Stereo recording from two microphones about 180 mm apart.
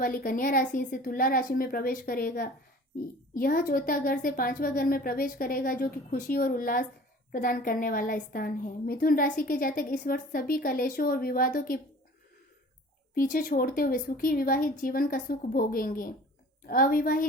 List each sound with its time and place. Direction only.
0.0 s a woman's voice: 55° left (ahead or behind)
13.1 s a woman's voice: 50° left (ahead or behind)